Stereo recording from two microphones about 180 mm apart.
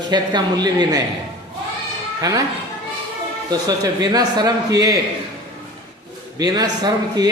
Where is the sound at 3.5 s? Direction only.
20° right (ahead or behind).